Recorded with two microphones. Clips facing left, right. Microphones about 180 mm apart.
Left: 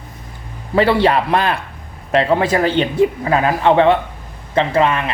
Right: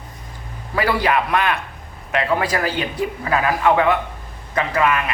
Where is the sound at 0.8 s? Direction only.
25° left (ahead or behind).